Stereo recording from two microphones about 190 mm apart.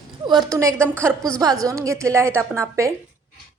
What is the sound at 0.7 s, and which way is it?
Speech, 10° left (ahead or behind).